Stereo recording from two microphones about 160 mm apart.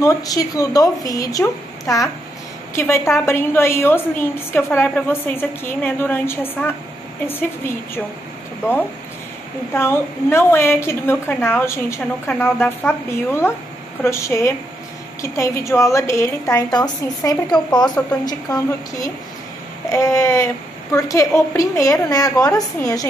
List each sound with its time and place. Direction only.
0.0 s a woman's voice: 20° left (ahead or behind)
9.8 s a woman's voice: 15° left (ahead or behind)
19.9 s a woman's voice: 20° left (ahead or behind)